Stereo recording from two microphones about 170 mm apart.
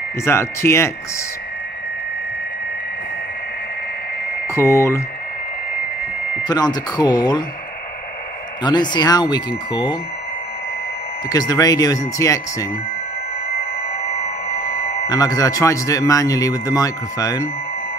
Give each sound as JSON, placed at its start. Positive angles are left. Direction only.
{"t": 0.2, "sound": "speech", "side_deg": 15}
{"t": 4.6, "sound": "speech", "side_deg": 15}
{"t": 6.4, "sound": "speech", "side_deg": 25}
{"t": 8.6, "sound": "speech", "side_deg": 25}
{"t": 11.2, "sound": "speech", "side_deg": 20}
{"t": 15.0, "sound": "speech", "side_deg": 20}